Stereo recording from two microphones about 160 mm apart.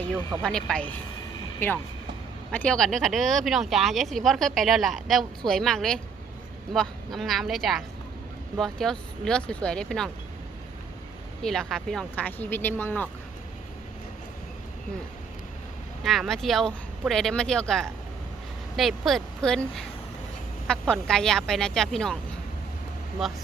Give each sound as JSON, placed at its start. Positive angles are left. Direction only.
{"t": 0.4, "sound": "speech", "side_deg": 5}
{"t": 11.4, "sound": "speech", "side_deg": 5}
{"t": 16.0, "sound": "speech", "side_deg": 0}
{"t": 23.2, "sound": "speech", "side_deg": 0}